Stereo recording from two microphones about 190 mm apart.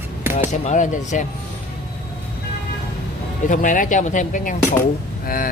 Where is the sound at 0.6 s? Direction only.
40° left (ahead or behind).